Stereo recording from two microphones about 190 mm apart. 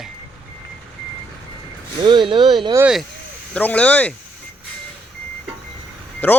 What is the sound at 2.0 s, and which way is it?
Speech, 25° right (ahead or behind).